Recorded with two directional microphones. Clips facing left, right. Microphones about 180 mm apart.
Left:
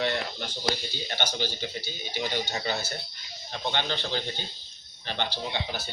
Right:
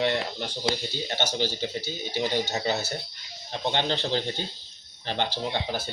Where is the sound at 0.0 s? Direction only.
25° right (ahead or behind).